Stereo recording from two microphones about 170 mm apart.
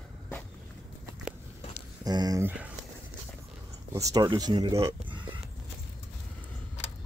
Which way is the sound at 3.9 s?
20° right (ahead or behind).